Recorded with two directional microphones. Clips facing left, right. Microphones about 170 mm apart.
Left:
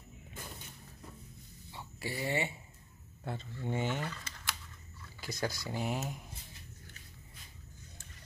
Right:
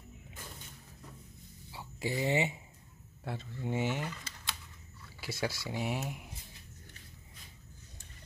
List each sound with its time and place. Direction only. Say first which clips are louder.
1.7 s a sound: right 5 dB; 15° right (ahead or behind)
3.3 s speech: right 1 dB; 5° right (ahead or behind)
5.2 s speech: right 1 dB; 5° right (ahead or behind)